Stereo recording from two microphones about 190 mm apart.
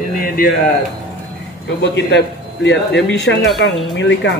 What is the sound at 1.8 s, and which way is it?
A man's voice, 70° left (ahead or behind).